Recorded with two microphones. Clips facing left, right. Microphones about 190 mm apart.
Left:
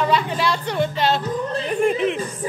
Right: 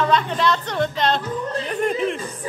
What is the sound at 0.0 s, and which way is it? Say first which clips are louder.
Speech: right 1 dB; 10° left (ahead or behind).